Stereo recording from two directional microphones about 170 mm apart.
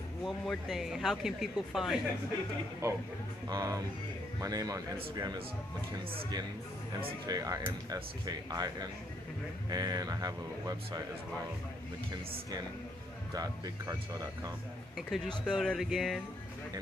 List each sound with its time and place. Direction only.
0.2 s speech: centre (ahead or behind)
2.8 s speech: 15° right (ahead or behind)
7.2 s speech: 20° right (ahead or behind)
13.3 s speech: 20° right (ahead or behind)
15.0 s speech: centre (ahead or behind)